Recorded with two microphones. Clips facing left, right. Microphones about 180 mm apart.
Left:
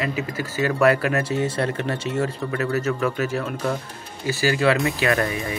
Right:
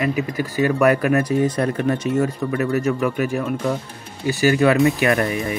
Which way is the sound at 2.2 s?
15° right (ahead or behind).